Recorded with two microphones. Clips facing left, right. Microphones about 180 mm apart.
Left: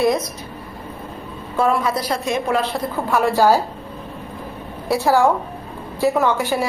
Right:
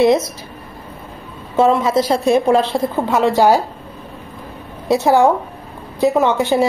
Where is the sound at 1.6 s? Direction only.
25° right (ahead or behind).